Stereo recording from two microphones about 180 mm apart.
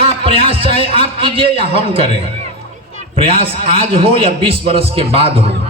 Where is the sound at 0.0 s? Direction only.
30° right (ahead or behind).